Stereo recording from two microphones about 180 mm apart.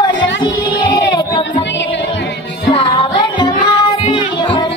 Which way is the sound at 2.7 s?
25° left (ahead or behind).